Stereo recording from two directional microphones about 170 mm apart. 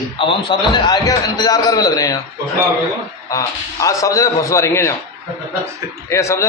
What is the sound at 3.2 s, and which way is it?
A man's voice, 20° left (ahead or behind).